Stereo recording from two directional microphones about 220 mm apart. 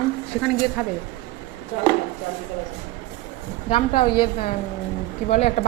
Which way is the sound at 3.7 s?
25° left (ahead or behind).